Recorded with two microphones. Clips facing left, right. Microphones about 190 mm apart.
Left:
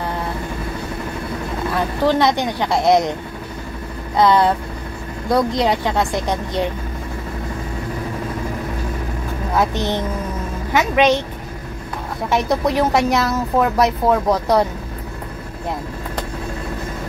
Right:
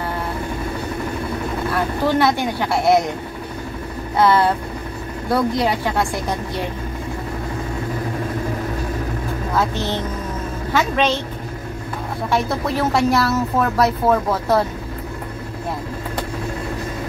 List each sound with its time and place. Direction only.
2.1 s speech: 20° left (ahead or behind)
4.2 s a woman's voice: 15° left (ahead or behind)
9.6 s a woman's voice: 15° left (ahead or behind)
12.3 s speech: 20° left (ahead or behind)